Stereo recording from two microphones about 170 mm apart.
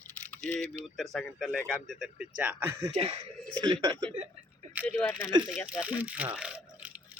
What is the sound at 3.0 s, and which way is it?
Speech, 35° right (ahead or behind).